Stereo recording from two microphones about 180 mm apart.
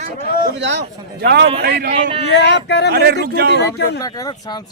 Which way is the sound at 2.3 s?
75° left (ahead or behind).